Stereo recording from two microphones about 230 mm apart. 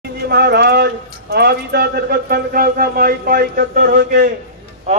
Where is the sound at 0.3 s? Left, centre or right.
Right.